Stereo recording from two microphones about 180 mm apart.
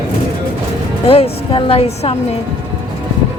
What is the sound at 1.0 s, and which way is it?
A woman's voice, 30° left (ahead or behind).